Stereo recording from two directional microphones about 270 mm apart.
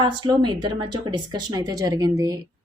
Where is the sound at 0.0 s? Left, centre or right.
Centre.